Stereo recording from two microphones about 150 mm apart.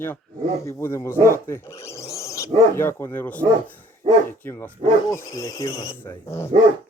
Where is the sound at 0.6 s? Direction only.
20° left (ahead or behind).